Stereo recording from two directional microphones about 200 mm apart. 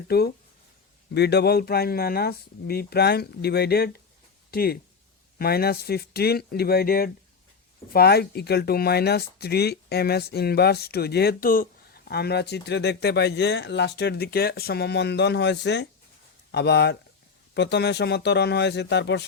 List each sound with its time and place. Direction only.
0.1 s speech: 50° left (ahead or behind)